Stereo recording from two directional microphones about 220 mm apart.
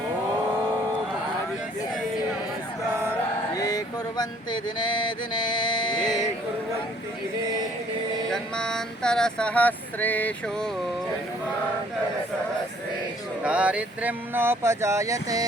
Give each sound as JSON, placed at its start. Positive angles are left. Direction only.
{"t": 3.5, "sound": "a sound", "side_deg": 15}
{"t": 8.3, "sound": "speech", "side_deg": 5}
{"t": 13.4, "sound": "speech", "side_deg": -5}